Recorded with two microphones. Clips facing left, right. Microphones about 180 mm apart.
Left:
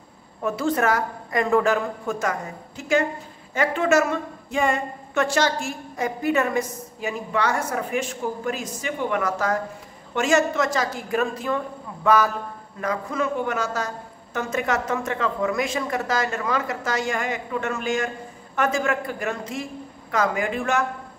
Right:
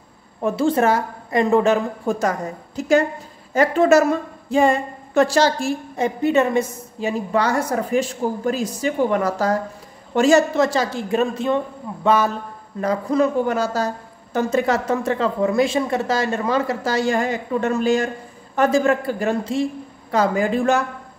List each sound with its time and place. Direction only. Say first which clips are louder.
0.4 s a woman's voice: right 5 dB; 30° right (ahead or behind)